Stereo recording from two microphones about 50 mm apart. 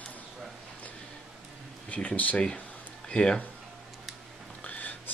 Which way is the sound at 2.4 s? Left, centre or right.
Centre.